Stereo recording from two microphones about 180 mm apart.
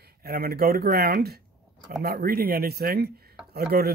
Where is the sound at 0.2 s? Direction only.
55° right (ahead or behind).